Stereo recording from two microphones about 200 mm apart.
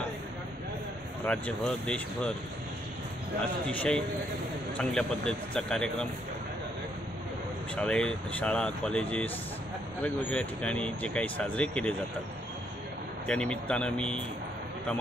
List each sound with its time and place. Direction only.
1.2 s speech: 5° left (ahead or behind)
3.6 s speech: 5° left (ahead or behind)
7.7 s speech: 5° left (ahead or behind)
13.3 s speech: 5° left (ahead or behind)